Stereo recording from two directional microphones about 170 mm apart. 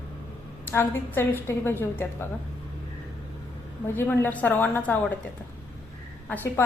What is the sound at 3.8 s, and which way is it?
A woman's voice, 10° left (ahead or behind).